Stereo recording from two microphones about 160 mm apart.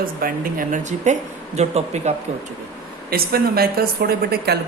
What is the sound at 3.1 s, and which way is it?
A woman's voice, 70° right (ahead or behind).